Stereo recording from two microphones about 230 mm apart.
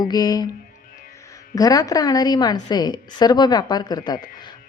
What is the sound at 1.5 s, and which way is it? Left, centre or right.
A woman's voice, centre.